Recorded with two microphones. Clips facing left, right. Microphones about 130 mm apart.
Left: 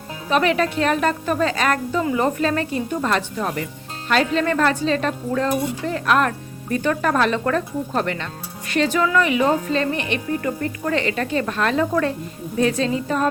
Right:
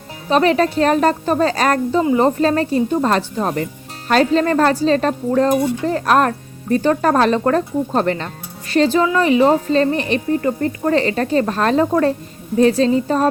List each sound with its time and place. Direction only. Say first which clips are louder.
0.3 s speech: right 4 dB; 35° right (ahead or behind)